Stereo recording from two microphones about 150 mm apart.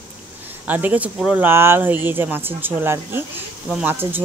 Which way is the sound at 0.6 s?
10° right (ahead or behind).